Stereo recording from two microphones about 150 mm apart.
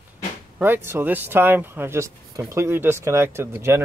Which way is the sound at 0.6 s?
15° right (ahead or behind).